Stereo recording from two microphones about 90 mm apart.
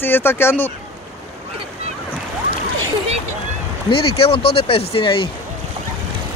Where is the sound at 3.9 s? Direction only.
90° left; by 5.3 s 70° left (ahead or behind).